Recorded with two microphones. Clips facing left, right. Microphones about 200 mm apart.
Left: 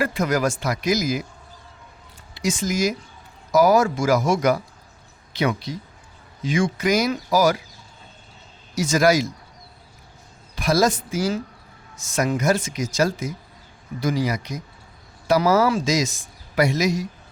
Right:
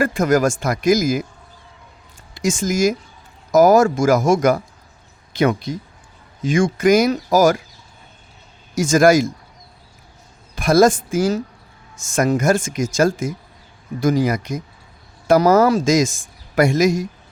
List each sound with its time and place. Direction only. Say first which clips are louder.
0.0 s speech: right 5 dB; 45° right (ahead or behind)
2.3 s speech: right 4 dB; 45° right (ahead or behind)
8.7 s speech: right 5 dB; 50° right (ahead or behind)
10.5 s speech: right 6 dB; 50° right (ahead or behind)